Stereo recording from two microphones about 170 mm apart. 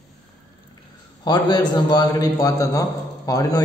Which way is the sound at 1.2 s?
25° left (ahead or behind).